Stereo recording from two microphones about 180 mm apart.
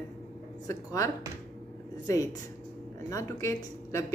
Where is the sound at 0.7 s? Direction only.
15° left (ahead or behind).